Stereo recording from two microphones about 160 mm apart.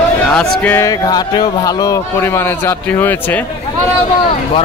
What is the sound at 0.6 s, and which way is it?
Speech, 15° left (ahead or behind).